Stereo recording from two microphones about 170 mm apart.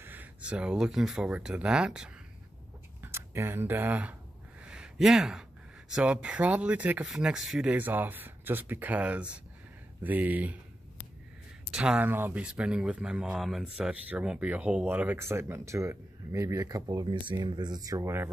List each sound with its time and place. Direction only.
0.0 s speech: 10° right (ahead or behind)
4.6 s a sound: 5° right (ahead or behind)
5.9 s speech: 5° right (ahead or behind)
11.7 s speech: 5° right (ahead or behind)